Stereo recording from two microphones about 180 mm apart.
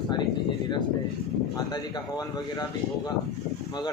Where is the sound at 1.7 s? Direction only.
20° left (ahead or behind).